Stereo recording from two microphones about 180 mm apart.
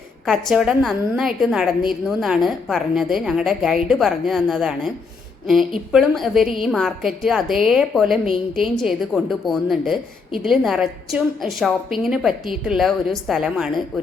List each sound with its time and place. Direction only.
0.3 s a woman's voice: 5° right (ahead or behind)
5.9 s a woman's voice: centre (ahead or behind)